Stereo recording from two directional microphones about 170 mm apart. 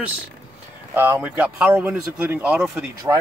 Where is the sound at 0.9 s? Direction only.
10° right (ahead or behind).